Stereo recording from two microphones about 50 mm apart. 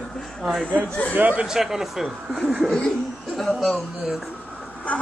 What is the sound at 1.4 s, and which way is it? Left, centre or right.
Speech, centre.